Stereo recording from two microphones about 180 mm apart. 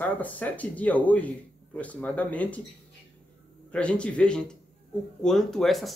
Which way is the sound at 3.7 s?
5° left (ahead or behind).